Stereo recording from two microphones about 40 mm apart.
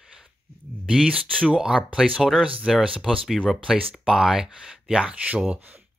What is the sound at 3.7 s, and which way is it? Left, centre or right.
Speech, centre.